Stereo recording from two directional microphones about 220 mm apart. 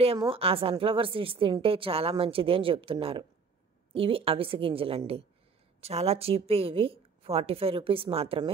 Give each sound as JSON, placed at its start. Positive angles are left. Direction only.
{"t": 0.2, "sound": "a woman's voice", "side_deg": -25}